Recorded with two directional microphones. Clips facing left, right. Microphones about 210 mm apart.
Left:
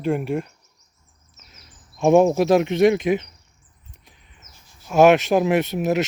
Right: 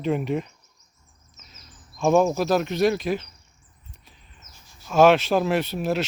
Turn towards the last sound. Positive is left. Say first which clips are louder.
# left 4 dB
turn(degrees=20)  # may be behind; listen again after turning